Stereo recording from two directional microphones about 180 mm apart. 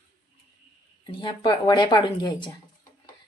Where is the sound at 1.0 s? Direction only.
30° left (ahead or behind).